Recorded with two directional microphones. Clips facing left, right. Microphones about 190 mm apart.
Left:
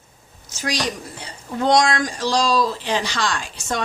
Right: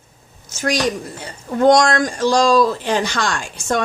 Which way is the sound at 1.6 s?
50° right (ahead or behind).